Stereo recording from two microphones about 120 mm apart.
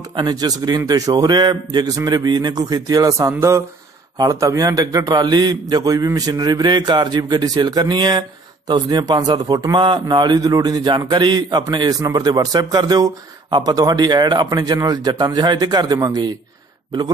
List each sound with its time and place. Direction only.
0.1 s a man's voice: 40° right (ahead or behind)